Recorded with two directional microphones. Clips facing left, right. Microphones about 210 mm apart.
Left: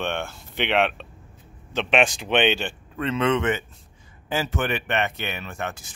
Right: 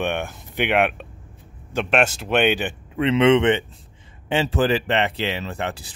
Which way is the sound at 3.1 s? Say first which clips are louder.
Right 6 dB; 25° right (ahead or behind).